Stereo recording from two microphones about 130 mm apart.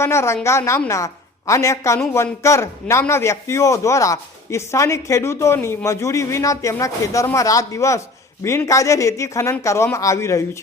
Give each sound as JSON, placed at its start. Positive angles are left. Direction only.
{"t": 0.0, "sound": "a man's voice", "side_deg": 20}